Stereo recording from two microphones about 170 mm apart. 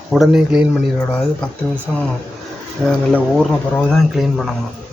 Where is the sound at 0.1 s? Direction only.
Centre (ahead or behind).